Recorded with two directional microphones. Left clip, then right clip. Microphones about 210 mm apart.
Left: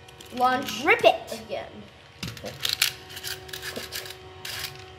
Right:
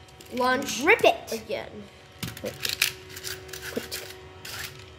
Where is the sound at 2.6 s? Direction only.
25° right (ahead or behind).